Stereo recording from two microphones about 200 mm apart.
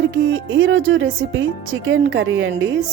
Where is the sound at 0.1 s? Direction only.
75° right (ahead or behind).